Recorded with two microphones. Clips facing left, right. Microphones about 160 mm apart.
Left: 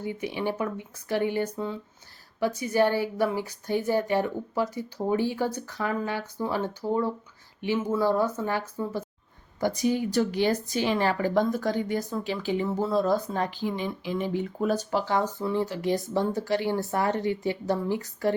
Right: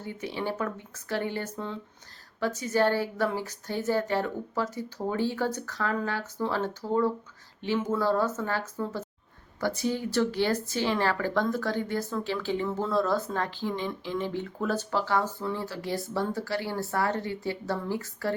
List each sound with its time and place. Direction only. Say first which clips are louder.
0.0 s speech: left 3 dB; 15° left (ahead or behind)